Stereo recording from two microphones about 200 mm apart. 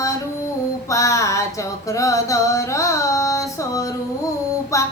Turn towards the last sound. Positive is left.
turn(degrees=15)  # may be behind; listen again after turning